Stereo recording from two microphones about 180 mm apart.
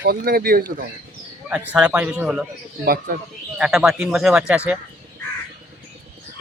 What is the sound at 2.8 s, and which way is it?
Speech, 55° right (ahead or behind).